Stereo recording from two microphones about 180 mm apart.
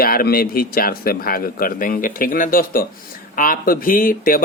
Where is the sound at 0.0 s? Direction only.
55° left (ahead or behind).